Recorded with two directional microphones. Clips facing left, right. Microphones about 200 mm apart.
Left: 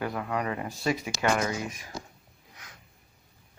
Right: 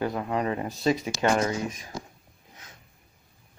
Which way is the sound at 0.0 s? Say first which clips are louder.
Right 3 dB; 25° right (ahead or behind).